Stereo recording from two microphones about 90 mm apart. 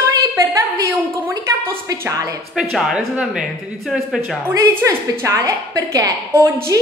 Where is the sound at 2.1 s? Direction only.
40° right (ahead or behind).